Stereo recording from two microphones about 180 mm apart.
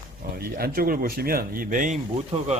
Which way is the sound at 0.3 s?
55° right (ahead or behind).